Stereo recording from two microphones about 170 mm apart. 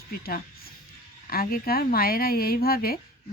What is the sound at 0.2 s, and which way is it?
A woman's voice, 65° left (ahead or behind).